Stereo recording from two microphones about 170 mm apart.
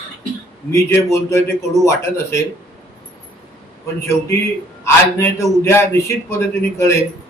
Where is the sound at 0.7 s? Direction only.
15° left (ahead or behind).